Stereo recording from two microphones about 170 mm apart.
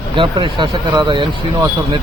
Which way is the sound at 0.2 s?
30° right (ahead or behind).